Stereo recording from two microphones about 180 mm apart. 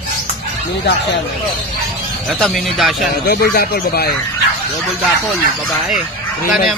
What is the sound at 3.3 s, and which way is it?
Speech, 60° left (ahead or behind).